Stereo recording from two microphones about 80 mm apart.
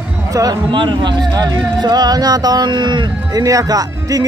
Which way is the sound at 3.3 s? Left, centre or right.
Right.